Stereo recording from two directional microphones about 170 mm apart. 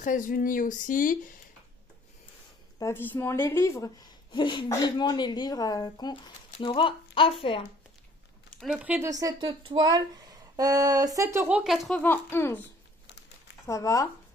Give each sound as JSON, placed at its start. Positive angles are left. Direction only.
{"t": 0.0, "sound": "speech", "side_deg": 50}
{"t": 2.8, "sound": "a woman's voice", "side_deg": 10}
{"t": 8.5, "sound": "speech", "side_deg": 0}
{"t": 9.1, "sound": "speech", "side_deg": -20}
{"t": 11.4, "sound": "speech", "side_deg": -5}
{"t": 12.0, "sound": "speech", "side_deg": 10}
{"t": 13.7, "sound": "a woman's voice", "side_deg": 20}